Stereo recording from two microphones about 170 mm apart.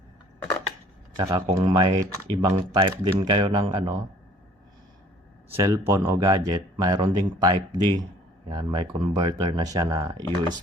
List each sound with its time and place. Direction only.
1.1 s speech: 20° right (ahead or behind)
5.5 s speech: 15° right (ahead or behind)